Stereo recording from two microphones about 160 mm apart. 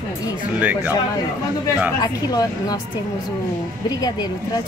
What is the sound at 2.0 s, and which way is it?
Speech, 25° left (ahead or behind).